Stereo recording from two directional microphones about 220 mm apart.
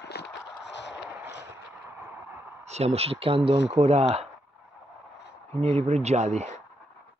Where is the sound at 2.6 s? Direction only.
30° right (ahead or behind).